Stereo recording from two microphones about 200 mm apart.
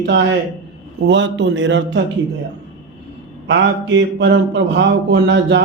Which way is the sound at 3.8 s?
60° right (ahead or behind).